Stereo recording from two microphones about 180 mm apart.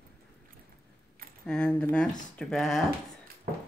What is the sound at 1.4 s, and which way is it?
Speech, 5° left (ahead or behind).